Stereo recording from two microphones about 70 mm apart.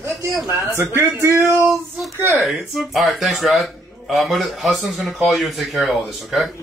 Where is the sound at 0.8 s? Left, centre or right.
Right.